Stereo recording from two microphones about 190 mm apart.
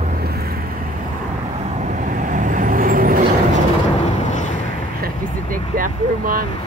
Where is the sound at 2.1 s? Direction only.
40° right (ahead or behind).